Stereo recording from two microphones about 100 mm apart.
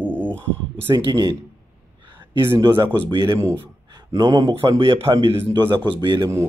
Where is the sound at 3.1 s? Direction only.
30° right (ahead or behind).